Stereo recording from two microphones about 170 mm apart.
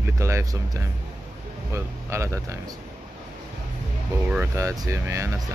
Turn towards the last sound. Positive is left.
turn(degrees=-15)  # may be behind; listen again after turning